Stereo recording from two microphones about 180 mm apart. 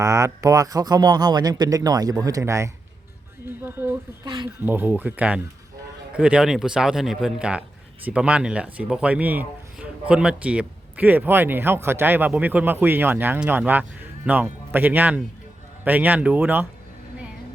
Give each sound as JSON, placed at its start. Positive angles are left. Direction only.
{"t": 0.0, "sound": "a man's voice", "side_deg": -15}